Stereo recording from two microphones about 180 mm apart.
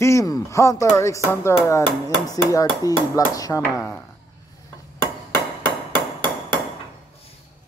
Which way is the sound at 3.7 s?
10° left (ahead or behind).